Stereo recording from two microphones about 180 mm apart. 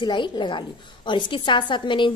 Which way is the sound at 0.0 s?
25° left (ahead or behind).